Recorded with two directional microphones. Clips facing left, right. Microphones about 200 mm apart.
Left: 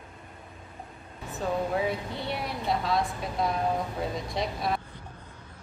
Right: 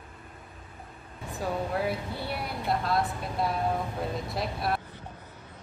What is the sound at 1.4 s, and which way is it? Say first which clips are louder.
Speech: left 2 dB; 5° right (ahead or behind).